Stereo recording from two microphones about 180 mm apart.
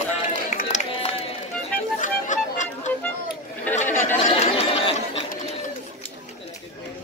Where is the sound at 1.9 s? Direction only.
45° left (ahead or behind).